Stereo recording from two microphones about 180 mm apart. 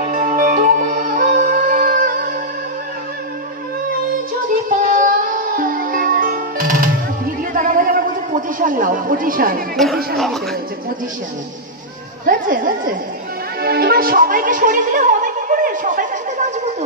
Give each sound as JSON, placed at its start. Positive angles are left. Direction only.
{"t": 0.3, "sound": "music", "side_deg": -50}
{"t": 4.6, "sound": "music", "side_deg": -50}
{"t": 9.8, "sound": "speech", "side_deg": 0}
{"t": 12.3, "sound": "speech", "side_deg": -50}
{"t": 13.6, "sound": "music", "side_deg": -60}